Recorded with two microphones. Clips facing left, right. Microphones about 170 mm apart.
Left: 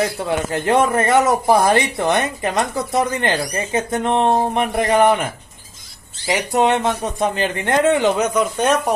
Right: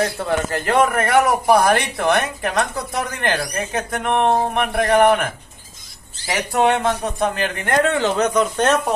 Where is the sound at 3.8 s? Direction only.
20° left (ahead or behind).